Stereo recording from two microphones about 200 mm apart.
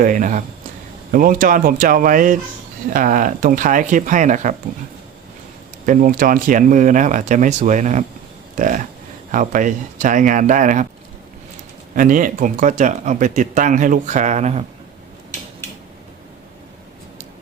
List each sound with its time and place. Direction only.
0.0 s speech: 40° right (ahead or behind)
5.8 s speech: 40° right (ahead or behind)
11.9 s speech: 40° right (ahead or behind)